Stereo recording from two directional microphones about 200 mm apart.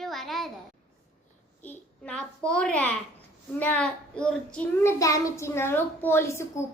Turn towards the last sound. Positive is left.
turn(degrees=15)  # may be behind; listen again after turning